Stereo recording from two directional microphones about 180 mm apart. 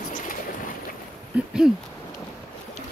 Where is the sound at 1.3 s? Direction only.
5° right (ahead or behind).